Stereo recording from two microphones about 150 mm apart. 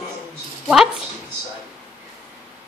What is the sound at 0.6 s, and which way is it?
Speech, centre (ahead or behind).